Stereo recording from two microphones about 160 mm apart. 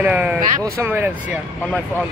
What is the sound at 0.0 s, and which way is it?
Speech, 10° right (ahead or behind).